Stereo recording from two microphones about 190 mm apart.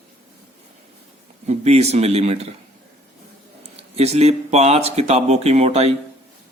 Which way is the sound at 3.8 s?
35° right (ahead or behind).